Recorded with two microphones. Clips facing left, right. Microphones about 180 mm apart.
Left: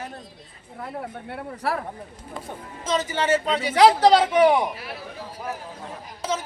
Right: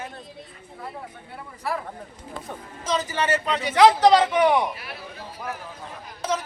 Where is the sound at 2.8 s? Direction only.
25° left (ahead or behind).